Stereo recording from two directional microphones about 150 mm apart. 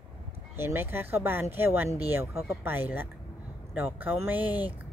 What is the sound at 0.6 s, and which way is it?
Speech, 15° right (ahead or behind).